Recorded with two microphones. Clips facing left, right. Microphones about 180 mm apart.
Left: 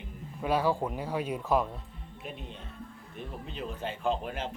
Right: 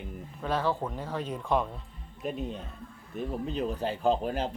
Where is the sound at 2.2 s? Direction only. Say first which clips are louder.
Right 9 dB; 40° right (ahead or behind).